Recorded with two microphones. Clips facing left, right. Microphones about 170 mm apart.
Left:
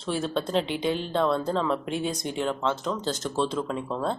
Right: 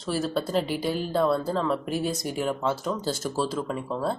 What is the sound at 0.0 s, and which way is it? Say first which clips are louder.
Speech: right 1 dB; 5° right (ahead or behind).